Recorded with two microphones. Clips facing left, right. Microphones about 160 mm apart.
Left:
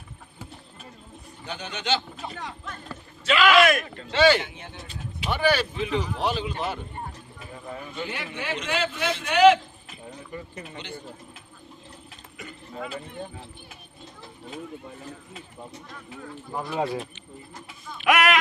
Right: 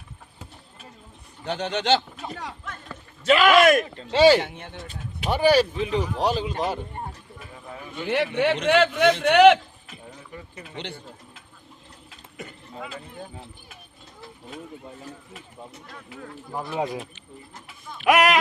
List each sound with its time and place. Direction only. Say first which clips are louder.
1.5 s speech: right 6 dB; 75° right (ahead or behind)
3.2 s speech: right 3 dB; 45° right (ahead or behind)
4.4 s speech: right 3 dB; 60° right (ahead or behind); by 6.7 s 35° right (ahead or behind)
8.1 s a man's voice: right 15 dB; 65° right (ahead or behind)
16.8 s speech: left 3 dB; 15° right (ahead or behind)
18.0 s speech: right 2 dB; 35° right (ahead or behind)